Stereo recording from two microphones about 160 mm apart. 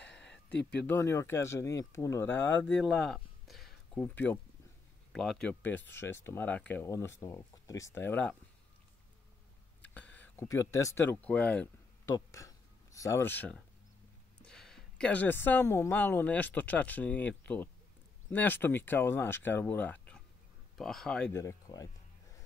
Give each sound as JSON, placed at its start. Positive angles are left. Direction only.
{"t": 0.0, "sound": "a sound", "side_deg": 5}
{"t": 0.8, "sound": "speech", "side_deg": 15}
{"t": 2.6, "sound": "speech", "side_deg": 0}
{"t": 9.8, "sound": "a sound", "side_deg": 10}
{"t": 14.4, "sound": "speech", "side_deg": 5}
{"t": 21.3, "sound": "speech", "side_deg": 20}